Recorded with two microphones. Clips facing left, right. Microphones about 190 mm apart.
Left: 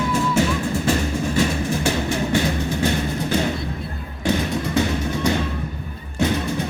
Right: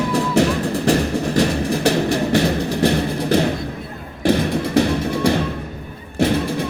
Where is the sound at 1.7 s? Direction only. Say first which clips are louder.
Right 4 dB; 35° right (ahead or behind).